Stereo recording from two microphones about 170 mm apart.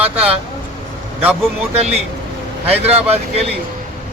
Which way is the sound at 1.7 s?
40° right (ahead or behind).